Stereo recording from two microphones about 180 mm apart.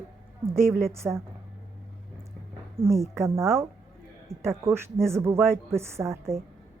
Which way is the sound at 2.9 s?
15° right (ahead or behind).